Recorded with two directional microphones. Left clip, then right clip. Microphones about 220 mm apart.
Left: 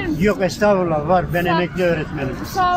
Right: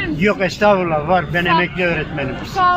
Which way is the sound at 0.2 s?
15° left (ahead or behind).